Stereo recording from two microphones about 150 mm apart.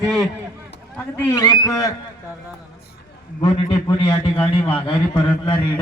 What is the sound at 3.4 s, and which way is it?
A man's voice, 25° left (ahead or behind).